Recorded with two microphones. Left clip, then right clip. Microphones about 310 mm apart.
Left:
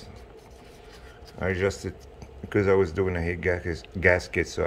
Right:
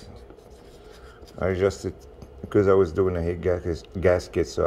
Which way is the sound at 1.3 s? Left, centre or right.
Centre.